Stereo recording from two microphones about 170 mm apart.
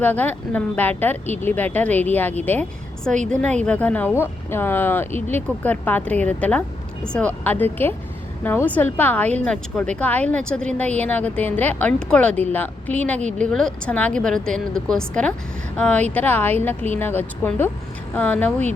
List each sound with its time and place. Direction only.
0.0 s a woman's voice: 10° left (ahead or behind)